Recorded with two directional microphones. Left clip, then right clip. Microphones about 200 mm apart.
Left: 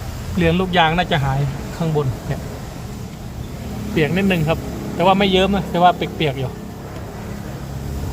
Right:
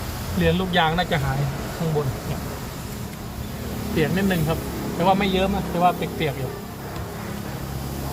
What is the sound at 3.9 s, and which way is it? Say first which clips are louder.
Speech: left 4 dB; 20° left (ahead or behind).